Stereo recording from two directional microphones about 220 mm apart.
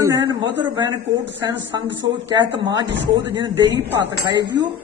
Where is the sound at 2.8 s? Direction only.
55° right (ahead or behind).